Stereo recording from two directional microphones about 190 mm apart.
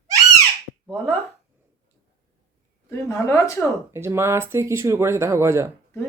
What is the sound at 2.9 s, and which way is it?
Speech, 15° left (ahead or behind).